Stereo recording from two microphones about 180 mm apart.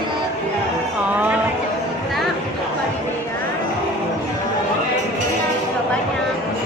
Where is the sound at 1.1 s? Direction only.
10° right (ahead or behind).